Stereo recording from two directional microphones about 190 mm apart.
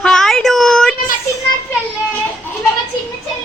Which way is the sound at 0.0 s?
Centre (ahead or behind).